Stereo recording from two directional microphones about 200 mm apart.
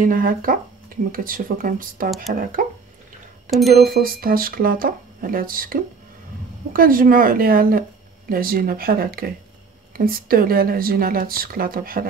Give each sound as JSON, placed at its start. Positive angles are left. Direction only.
{"t": 0.0, "sound": "speech", "side_deg": -45}
{"t": 3.4, "sound": "speech", "side_deg": 0}
{"t": 3.9, "sound": "speech", "side_deg": -45}